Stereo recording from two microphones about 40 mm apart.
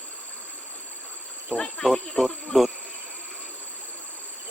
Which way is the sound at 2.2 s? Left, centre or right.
Centre.